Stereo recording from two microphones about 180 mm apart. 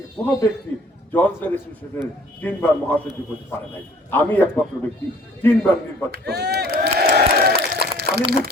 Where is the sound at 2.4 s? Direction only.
10° left (ahead or behind).